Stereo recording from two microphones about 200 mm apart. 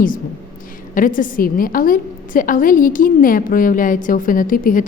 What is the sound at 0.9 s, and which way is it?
A woman's voice, 40° left (ahead or behind).